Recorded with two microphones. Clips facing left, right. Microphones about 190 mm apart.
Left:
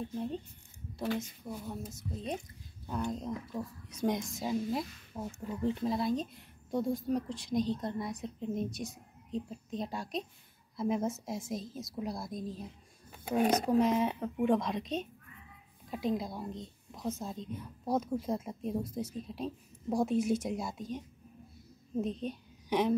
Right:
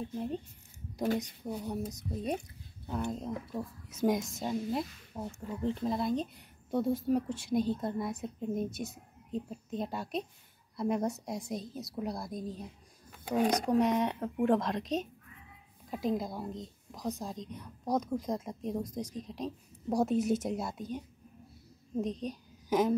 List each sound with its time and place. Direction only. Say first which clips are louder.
0.0 s speech: right 1 dB; centre (ahead or behind)
1.0 s a woman's voice: right 3 dB; 40° right (ahead or behind)
1.5 s speech: right 5 dB; 20° right (ahead or behind)
3.1 s a woman's voice: even; centre (ahead or behind)
22.7 s speech: right 1 dB; centre (ahead or behind)